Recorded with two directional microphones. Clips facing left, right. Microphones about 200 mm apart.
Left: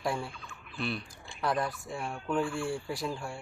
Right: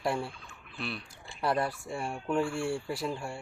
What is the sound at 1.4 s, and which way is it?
Speech, 30° right (ahead or behind).